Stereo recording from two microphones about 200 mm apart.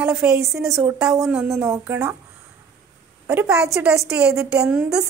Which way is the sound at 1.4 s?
15° right (ahead or behind).